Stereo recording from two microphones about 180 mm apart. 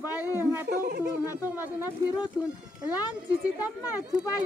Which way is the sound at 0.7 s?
55° right (ahead or behind).